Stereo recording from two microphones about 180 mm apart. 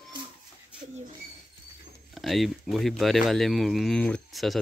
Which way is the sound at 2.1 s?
Centre (ahead or behind).